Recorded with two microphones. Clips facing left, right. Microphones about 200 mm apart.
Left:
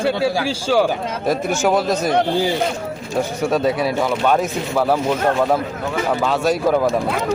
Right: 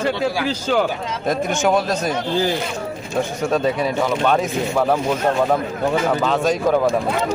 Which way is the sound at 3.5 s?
10° left (ahead or behind).